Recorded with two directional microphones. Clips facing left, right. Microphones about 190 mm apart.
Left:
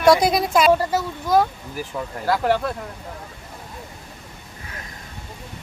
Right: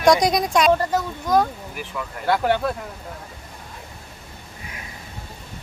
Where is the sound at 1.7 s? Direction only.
35° left (ahead or behind).